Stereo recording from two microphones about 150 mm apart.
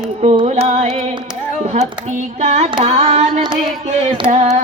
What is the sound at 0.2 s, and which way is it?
Music, 45° right (ahead or behind).